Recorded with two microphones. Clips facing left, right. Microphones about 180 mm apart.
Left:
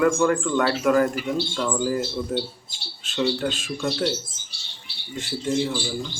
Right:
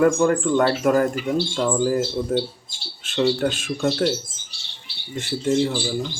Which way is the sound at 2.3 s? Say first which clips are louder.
Right 4 dB; 50° right (ahead or behind).